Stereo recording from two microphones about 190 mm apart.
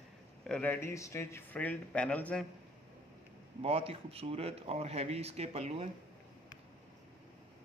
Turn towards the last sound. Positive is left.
turn(degrees=-30)  # may be behind; listen again after turning